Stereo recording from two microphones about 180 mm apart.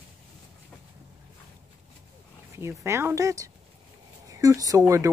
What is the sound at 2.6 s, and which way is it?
Speech, 15° right (ahead or behind).